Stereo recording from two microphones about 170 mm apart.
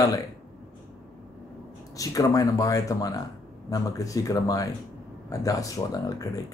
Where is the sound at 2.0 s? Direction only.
20° left (ahead or behind).